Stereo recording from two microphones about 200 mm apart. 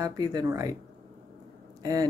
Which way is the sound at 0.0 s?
20° right (ahead or behind).